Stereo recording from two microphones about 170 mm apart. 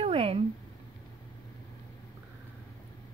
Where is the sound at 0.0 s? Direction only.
35° right (ahead or behind).